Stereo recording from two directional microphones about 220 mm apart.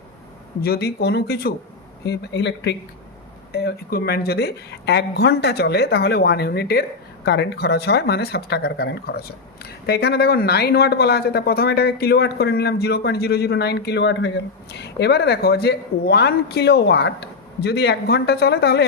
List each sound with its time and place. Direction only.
0.6 s speech: 45° left (ahead or behind)